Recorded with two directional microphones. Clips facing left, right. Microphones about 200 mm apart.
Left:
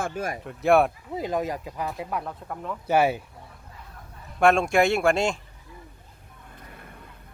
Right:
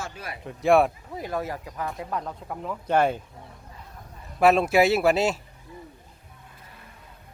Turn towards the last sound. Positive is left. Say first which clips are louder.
# right 1 dB
turn(degrees=-5)  # may be behind; listen again after turning